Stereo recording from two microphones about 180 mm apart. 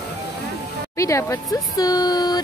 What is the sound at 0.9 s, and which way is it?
Speech, 15° left (ahead or behind).